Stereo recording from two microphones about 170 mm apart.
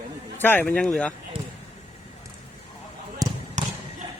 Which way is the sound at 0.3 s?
10° left (ahead or behind).